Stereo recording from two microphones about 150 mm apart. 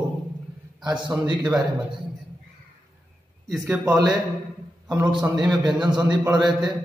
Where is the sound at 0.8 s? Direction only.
30° right (ahead or behind).